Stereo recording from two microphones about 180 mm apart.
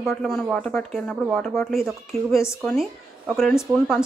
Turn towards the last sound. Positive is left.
turn(degrees=-5)  # may be behind; listen again after turning